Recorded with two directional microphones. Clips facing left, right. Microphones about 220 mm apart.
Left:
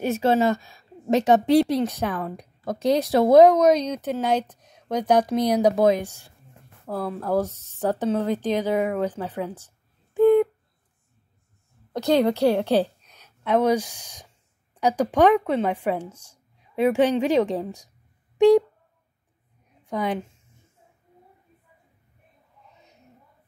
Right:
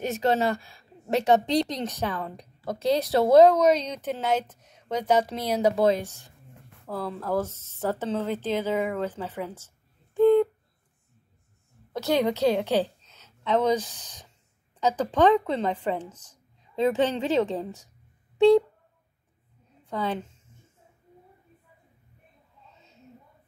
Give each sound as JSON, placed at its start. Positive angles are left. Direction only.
{"t": 0.1, "sound": "a woman's voice", "side_deg": 15}
{"t": 10.1, "sound": "a sound", "side_deg": 10}
{"t": 12.1, "sound": "a woman's voice", "side_deg": -15}
{"t": 12.8, "sound": "a woman's voice", "side_deg": 15}
{"t": 19.8, "sound": "a woman's voice", "side_deg": 15}
{"t": 22.8, "sound": "a sound", "side_deg": 15}